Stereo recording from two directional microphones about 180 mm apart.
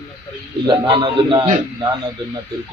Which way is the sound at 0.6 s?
25° right (ahead or behind).